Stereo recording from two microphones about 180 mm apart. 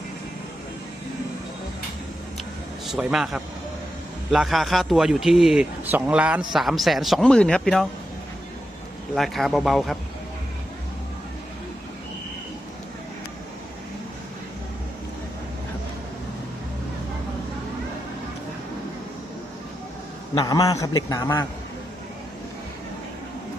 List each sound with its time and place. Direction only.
2.9 s a man's voice: 5° right (ahead or behind)
9.1 s a man's voice: centre (ahead or behind)
20.3 s a man's voice: 20° left (ahead or behind)